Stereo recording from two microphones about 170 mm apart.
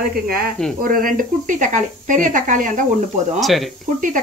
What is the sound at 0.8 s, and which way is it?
Speech, 55° right (ahead or behind).